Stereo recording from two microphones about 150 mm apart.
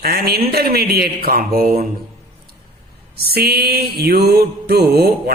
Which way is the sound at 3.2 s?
90° right.